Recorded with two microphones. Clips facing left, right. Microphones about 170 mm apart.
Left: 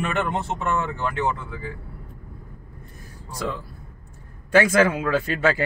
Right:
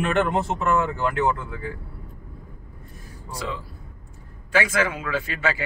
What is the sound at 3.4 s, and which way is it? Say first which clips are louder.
A man's voice: left 3 dB; 50° left (ahead or behind).